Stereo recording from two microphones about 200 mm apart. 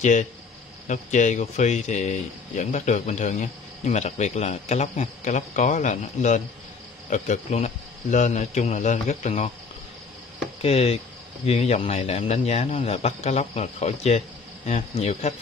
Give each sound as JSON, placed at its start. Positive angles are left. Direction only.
{"t": 0.0, "sound": "a man's voice", "side_deg": 40}
{"t": 10.6, "sound": "a man's voice", "side_deg": 30}